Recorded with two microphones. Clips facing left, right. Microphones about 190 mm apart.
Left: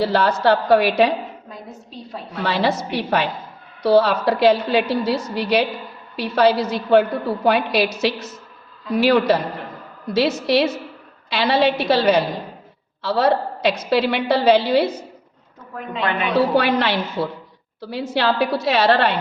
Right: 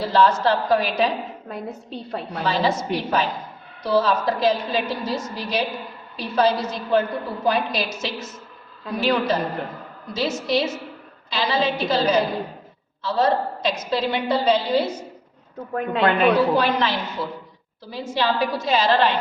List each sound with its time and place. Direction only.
0.0 s a woman's voice: 65° left (ahead or behind)
1.5 s a woman's voice: 60° right (ahead or behind)
2.4 s a woman's voice: 70° left (ahead or behind)
15.7 s a woman's voice: 55° right (ahead or behind)
16.6 s a woman's voice: 70° left (ahead or behind)